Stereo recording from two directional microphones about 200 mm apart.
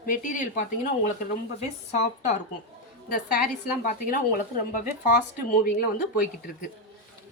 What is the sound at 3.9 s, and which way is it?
Speech, 40° left (ahead or behind).